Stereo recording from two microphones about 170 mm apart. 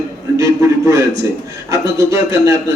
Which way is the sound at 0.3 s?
20° right (ahead or behind).